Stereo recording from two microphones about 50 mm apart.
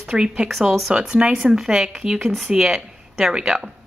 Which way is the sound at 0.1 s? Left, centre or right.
Centre.